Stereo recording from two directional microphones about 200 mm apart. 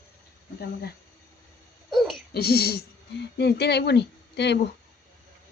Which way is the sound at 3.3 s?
55° left (ahead or behind).